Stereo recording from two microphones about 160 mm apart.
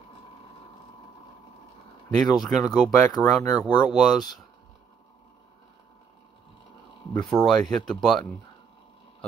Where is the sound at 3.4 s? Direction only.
25° left (ahead or behind).